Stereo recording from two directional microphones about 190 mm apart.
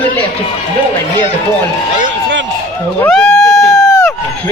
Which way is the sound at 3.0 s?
5° left (ahead or behind).